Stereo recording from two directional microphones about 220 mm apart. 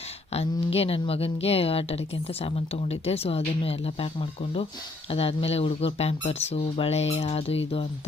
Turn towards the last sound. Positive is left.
turn(degrees=25)  # may be behind; listen again after turning